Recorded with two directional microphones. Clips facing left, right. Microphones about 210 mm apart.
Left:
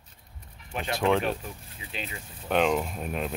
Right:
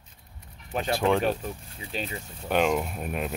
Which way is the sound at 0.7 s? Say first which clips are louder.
Right 4 dB; 30° right (ahead or behind).